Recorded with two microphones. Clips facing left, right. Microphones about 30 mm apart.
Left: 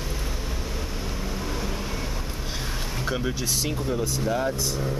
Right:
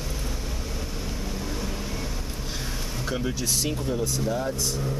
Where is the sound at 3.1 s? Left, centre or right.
Centre.